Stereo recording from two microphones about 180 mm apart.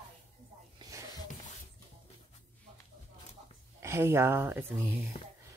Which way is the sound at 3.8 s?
15° right (ahead or behind).